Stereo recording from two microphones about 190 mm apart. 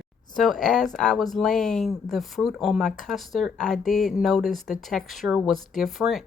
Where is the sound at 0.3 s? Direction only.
Centre (ahead or behind).